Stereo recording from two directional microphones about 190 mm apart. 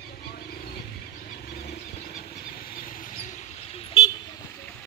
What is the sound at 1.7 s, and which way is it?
Vehicle, 50° left (ahead or behind).